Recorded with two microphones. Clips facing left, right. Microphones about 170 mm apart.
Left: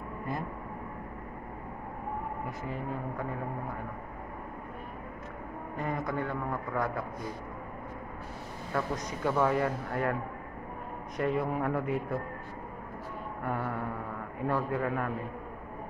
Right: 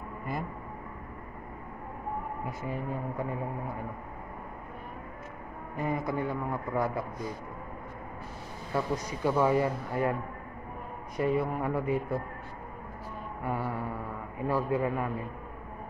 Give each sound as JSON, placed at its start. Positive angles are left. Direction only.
{"t": 5.8, "sound": "a man's voice", "side_deg": -5}
{"t": 8.7, "sound": "speech", "side_deg": -5}
{"t": 11.1, "sound": "speech", "side_deg": 0}
{"t": 13.4, "sound": "a man's voice", "side_deg": -5}